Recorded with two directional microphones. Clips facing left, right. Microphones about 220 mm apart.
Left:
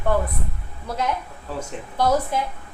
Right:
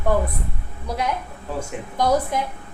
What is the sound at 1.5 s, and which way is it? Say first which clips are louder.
Speech: right 1 dB; 15° right (ahead or behind).